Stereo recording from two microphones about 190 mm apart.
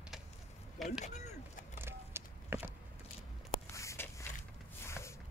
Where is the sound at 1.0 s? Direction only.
35° left (ahead or behind).